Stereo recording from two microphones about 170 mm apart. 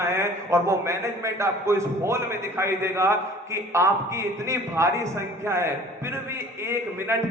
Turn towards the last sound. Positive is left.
turn(degrees=-15)  # may be behind; listen again after turning